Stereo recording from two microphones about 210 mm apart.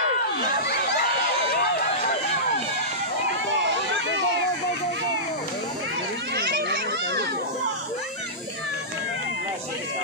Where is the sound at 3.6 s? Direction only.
60° right (ahead or behind).